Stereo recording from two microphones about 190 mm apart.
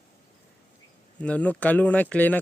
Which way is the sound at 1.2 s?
5° left (ahead or behind).